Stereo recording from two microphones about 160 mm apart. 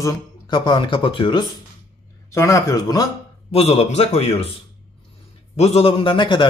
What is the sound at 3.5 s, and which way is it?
A man's voice, 40° left (ahead or behind).